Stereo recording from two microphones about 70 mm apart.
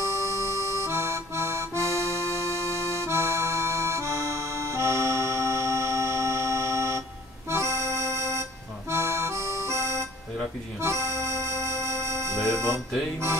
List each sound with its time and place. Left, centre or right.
0.0 s accordion: right
10.8 s music: right